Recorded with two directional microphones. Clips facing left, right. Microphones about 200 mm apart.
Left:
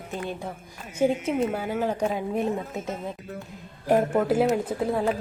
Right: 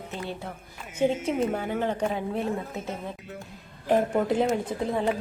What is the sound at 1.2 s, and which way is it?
A woman's voice, 5° left (ahead or behind).